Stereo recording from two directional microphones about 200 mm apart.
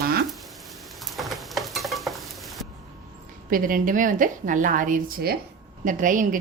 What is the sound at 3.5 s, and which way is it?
A woman's voice, 45° right (ahead or behind).